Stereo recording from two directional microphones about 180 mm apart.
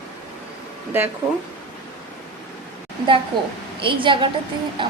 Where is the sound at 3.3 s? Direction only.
25° right (ahead or behind).